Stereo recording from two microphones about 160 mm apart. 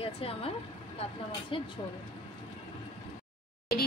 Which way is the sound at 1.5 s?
35° left (ahead or behind).